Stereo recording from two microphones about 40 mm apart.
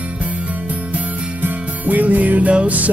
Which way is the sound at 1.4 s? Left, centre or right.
Right.